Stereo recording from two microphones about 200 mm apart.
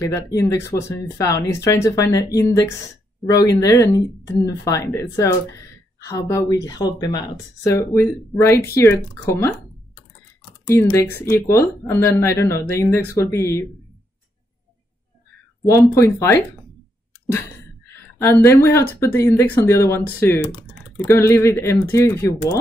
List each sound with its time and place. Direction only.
0.0 s speech: 15° left (ahead or behind)
3.3 s speech: 15° left (ahead or behind)
10.7 s speech: 15° left (ahead or behind)
15.7 s speech: 15° left (ahead or behind)
18.2 s speech: 10° left (ahead or behind)